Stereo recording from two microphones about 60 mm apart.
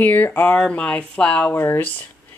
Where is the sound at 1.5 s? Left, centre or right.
Left.